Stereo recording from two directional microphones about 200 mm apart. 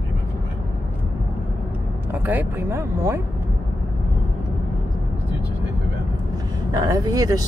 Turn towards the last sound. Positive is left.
turn(degrees=-20)  # may be behind; listen again after turning